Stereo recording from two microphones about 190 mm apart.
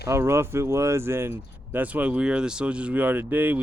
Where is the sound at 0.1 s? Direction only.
15° right (ahead or behind).